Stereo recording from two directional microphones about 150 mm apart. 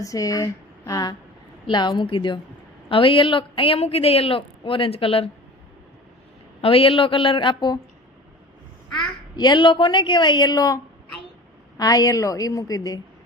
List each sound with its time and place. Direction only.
0.0 s a man's voice: 25° left (ahead or behind); by 5.3 s 40° left (ahead or behind)
6.6 s a man's voice: 40° left (ahead or behind)
9.0 s a man's voice: 30° left (ahead or behind)
11.8 s a woman's voice: 25° left (ahead or behind)